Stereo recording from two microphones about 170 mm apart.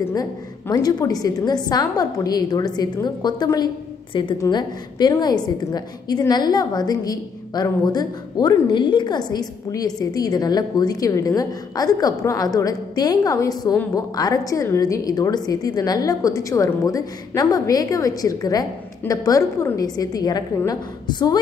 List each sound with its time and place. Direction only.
0.1 s a woman's voice: 20° left (ahead or behind)